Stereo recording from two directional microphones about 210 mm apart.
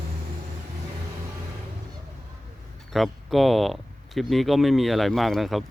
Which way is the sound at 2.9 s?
Centre (ahead or behind).